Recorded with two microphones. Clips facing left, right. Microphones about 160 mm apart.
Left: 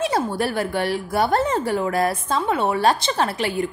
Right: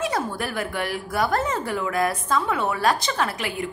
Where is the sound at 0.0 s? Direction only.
30° left (ahead or behind).